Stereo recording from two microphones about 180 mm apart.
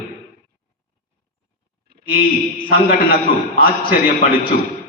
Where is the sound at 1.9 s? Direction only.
60° right (ahead or behind).